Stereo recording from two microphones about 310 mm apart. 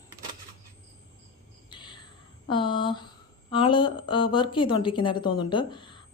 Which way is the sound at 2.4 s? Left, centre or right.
Centre.